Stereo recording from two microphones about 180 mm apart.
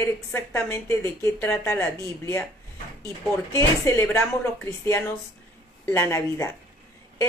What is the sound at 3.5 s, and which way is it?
A woman's voice, 15° left (ahead or behind).